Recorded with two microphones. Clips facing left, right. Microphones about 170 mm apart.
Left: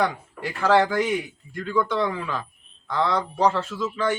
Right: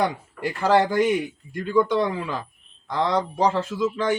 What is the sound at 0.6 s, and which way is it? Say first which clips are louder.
A man's voice: right 1 dB; 15° right (ahead or behind).